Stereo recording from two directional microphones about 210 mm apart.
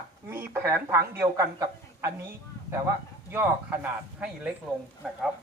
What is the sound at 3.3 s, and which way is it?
Speech, 10° right (ahead or behind).